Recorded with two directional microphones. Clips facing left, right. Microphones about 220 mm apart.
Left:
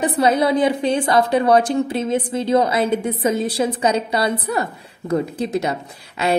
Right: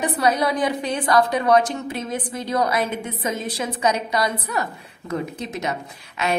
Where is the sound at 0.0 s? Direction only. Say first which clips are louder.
Left 4 dB; 25° left (ahead or behind).